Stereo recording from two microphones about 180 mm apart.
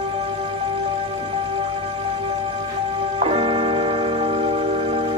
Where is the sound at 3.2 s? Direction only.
30° right (ahead or behind).